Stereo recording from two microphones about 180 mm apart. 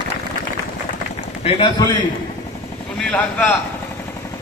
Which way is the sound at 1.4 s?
30° left (ahead or behind).